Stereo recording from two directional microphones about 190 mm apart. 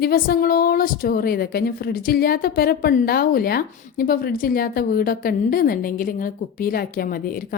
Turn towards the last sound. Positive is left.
turn(degrees=50)  # may be behind; listen again after turning